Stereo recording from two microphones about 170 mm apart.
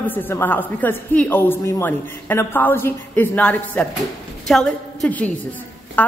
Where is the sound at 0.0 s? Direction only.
10° left (ahead or behind).